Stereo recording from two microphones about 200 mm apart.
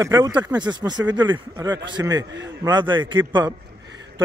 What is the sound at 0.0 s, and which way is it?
A man's voice, 15° right (ahead or behind).